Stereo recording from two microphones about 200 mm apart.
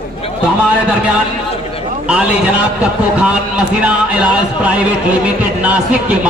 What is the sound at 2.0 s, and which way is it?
A man's voice, 5° right (ahead or behind).